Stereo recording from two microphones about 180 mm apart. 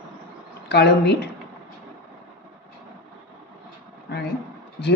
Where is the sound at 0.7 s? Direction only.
65° left (ahead or behind).